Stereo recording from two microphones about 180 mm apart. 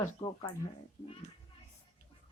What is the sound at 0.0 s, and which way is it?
Speech, 15° left (ahead or behind).